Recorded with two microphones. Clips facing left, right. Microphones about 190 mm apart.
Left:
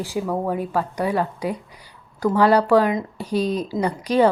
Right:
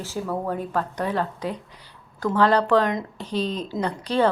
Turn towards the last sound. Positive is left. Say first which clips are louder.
# left 4 dB
turn(degrees=10)  # may be behind; listen again after turning